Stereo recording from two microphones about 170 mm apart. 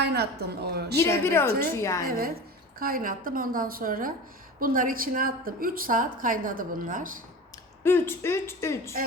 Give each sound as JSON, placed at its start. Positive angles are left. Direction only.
{"t": 0.0, "sound": "a woman's voice", "side_deg": -70}
{"t": 0.9, "sound": "speech", "side_deg": 15}
{"t": 2.0, "sound": "a woman's voice", "side_deg": -60}
{"t": 7.9, "sound": "speech", "side_deg": 15}